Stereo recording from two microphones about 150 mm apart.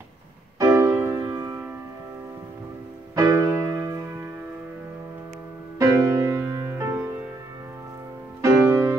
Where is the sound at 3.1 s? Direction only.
20° right (ahead or behind).